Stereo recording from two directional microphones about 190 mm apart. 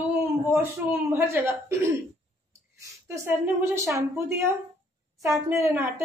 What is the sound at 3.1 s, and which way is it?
A woman's voice, 15° right (ahead or behind).